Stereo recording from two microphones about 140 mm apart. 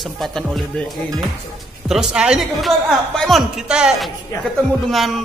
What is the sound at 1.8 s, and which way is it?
Speech, 5° right (ahead or behind).